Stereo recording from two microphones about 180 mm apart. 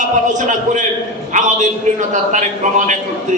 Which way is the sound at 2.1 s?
45° right (ahead or behind).